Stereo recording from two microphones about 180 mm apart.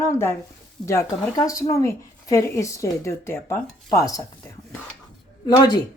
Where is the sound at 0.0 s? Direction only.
15° left (ahead or behind).